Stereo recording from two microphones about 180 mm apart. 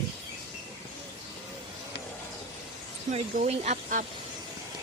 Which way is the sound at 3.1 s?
40° right (ahead or behind).